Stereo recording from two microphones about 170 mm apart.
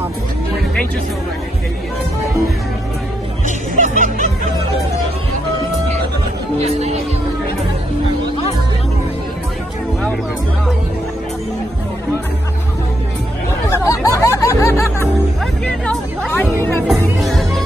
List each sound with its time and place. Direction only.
3.4 s music: 45° right (ahead or behind)
13.7 s music: 20° left (ahead or behind)
15.6 s speech: 5° left (ahead or behind)
16.3 s music: 10° left (ahead or behind)